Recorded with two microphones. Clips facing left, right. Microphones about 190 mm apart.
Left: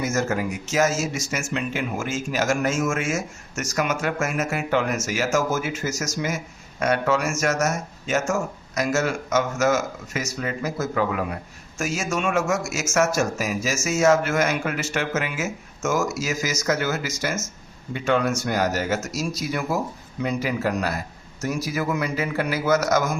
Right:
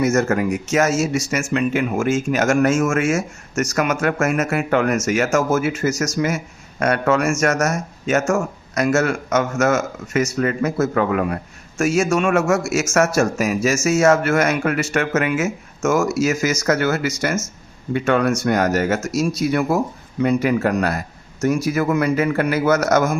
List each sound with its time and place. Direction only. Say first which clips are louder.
0.0 s speech: right 7 dB; 65° right (ahead or behind)